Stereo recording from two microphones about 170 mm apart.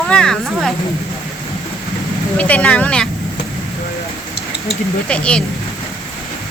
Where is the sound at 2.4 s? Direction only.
10° left (ahead or behind).